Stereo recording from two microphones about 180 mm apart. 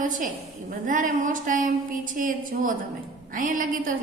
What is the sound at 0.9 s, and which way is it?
A woman's voice, 50° right (ahead or behind).